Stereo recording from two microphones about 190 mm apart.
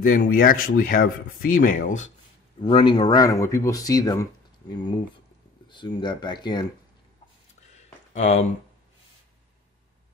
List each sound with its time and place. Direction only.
0.0 s speech: 45° left (ahead or behind)
2.6 s speech: 25° left (ahead or behind)
5.7 s speech: 25° left (ahead or behind)
7.7 s a sound: 35° left (ahead or behind)